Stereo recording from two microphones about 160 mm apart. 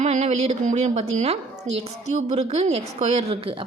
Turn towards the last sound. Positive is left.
turn(degrees=-35)  # may be behind; listen again after turning